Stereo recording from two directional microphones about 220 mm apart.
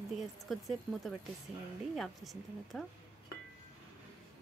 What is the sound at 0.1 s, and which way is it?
Speech, centre (ahead or behind).